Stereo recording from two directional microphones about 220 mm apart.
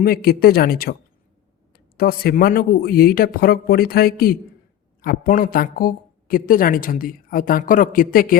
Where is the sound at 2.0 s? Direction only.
45° left (ahead or behind).